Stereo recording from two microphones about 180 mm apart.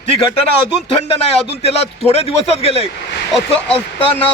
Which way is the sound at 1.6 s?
35° left (ahead or behind).